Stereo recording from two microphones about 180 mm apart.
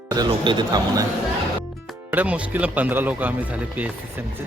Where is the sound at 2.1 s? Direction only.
10° right (ahead or behind).